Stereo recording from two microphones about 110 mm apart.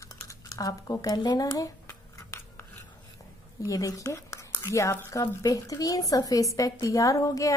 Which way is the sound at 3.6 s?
30° left (ahead or behind).